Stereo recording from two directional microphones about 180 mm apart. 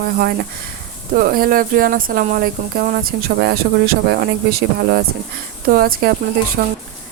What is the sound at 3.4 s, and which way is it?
Speech, 65° right (ahead or behind).